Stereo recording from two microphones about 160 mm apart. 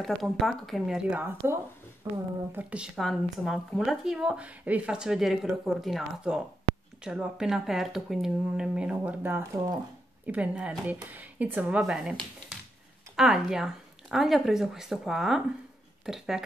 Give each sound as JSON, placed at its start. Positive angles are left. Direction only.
{"t": 0.0, "sound": "speech", "side_deg": 0}
{"t": 2.5, "sound": "speech", "side_deg": -5}